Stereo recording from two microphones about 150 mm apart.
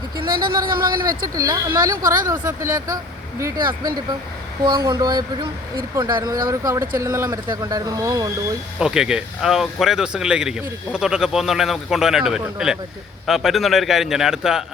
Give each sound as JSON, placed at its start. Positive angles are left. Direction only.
{"t": 0.3, "sound": "speech", "side_deg": -80}
{"t": 1.4, "sound": "speech", "side_deg": -25}
{"t": 8.8, "sound": "speech", "side_deg": -5}